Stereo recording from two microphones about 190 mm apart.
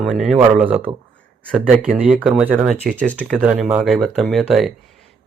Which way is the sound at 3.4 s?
5° right (ahead or behind).